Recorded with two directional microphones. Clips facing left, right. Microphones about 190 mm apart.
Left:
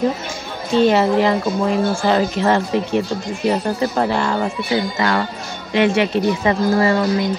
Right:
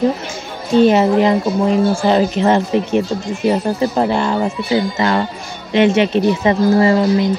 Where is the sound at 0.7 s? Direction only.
20° right (ahead or behind).